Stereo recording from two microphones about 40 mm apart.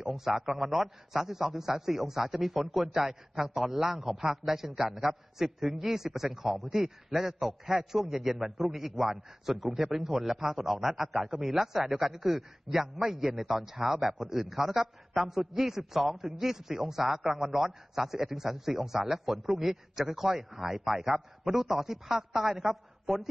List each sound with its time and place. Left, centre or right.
0.0 s a man's voice: centre